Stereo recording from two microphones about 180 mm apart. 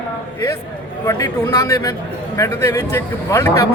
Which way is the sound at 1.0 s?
15° left (ahead or behind).